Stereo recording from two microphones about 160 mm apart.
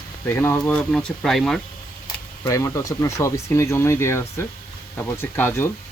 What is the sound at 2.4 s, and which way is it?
Speech, 20° left (ahead or behind).